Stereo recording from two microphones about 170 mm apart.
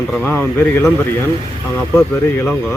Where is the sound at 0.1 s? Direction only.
10° left (ahead or behind).